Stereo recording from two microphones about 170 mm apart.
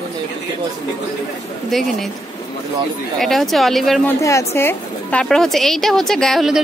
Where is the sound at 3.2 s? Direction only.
Centre (ahead or behind).